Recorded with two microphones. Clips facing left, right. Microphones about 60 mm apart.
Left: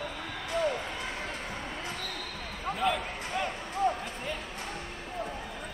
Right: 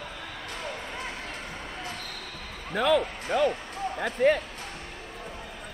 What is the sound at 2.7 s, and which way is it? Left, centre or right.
Speech, right.